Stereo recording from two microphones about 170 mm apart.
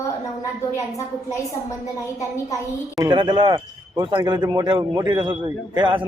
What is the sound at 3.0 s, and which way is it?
A man's voice, 25° right (ahead or behind).